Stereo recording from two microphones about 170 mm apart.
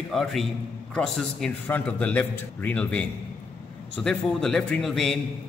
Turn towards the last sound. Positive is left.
turn(degrees=0)  # may be behind; listen again after turning